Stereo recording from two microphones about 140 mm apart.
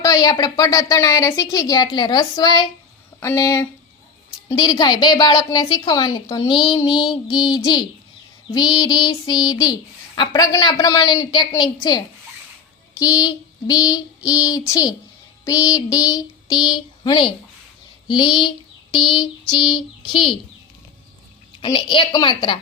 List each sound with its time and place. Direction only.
0.0 s a woman's voice: 25° left (ahead or behind)
15.4 s a sound: 25° left (ahead or behind)
18.1 s a woman's voice: 35° left (ahead or behind)
21.6 s a woman's voice: 40° left (ahead or behind)